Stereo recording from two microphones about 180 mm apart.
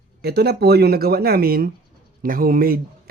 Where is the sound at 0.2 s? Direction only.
65° right (ahead or behind).